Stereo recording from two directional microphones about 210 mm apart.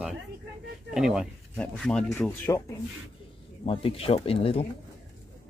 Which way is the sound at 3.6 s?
25° left (ahead or behind).